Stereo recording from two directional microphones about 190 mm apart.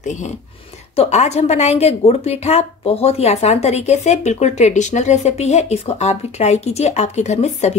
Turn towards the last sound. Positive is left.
turn(degrees=35)  # may be behind; listen again after turning